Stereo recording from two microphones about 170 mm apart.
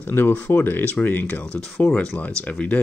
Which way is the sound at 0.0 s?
15° left (ahead or behind).